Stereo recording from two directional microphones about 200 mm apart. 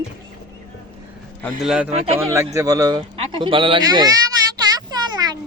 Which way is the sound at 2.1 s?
15° right (ahead or behind).